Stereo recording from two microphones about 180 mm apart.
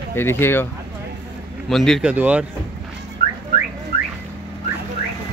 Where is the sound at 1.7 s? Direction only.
Centre (ahead or behind).